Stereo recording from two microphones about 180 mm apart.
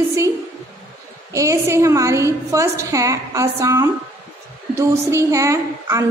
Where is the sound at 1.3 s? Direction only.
15° right (ahead or behind).